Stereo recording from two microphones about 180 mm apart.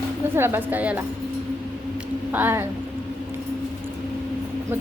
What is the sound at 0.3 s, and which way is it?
Speech, 10° right (ahead or behind).